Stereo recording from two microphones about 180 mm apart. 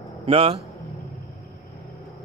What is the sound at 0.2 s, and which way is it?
Speech, 30° right (ahead or behind).